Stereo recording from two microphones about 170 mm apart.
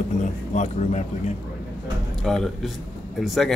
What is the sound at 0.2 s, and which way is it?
Speech, 45° left (ahead or behind).